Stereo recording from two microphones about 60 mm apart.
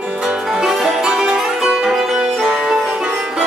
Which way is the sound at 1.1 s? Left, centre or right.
Centre.